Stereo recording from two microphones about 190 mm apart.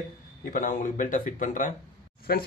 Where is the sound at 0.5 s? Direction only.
40° left (ahead or behind).